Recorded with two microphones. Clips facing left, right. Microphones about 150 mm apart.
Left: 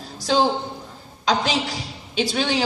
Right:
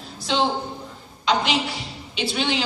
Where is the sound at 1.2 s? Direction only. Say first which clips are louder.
Even; 40° left (ahead or behind).